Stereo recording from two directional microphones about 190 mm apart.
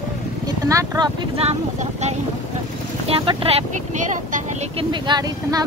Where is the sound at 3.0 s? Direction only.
30° right (ahead or behind).